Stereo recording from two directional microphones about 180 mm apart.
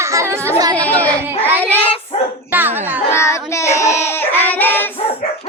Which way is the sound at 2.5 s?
10° right (ahead or behind).